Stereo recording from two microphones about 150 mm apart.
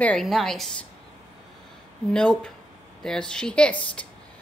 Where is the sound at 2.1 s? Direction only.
5° left (ahead or behind).